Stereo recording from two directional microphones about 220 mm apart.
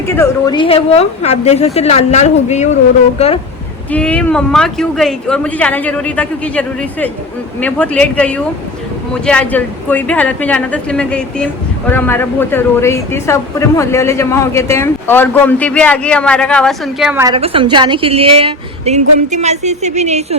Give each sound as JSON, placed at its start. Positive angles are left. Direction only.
{"t": 0.2, "sound": "a woman's voice", "side_deg": 20}
{"t": 3.9, "sound": "speech", "side_deg": 5}
{"t": 17.2, "sound": "a woman's voice", "side_deg": -25}